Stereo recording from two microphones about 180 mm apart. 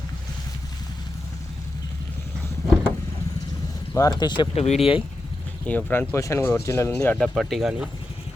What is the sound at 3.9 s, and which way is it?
Speech, 20° left (ahead or behind).